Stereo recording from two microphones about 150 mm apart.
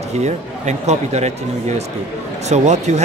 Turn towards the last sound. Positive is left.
turn(degrees=-50)  # may be behind; listen again after turning